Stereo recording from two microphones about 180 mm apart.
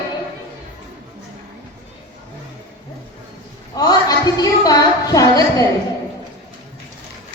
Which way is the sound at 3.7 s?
20° left (ahead or behind).